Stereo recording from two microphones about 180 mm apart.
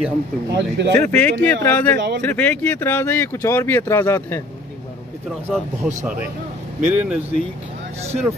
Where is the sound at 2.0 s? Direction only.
70° right (ahead or behind).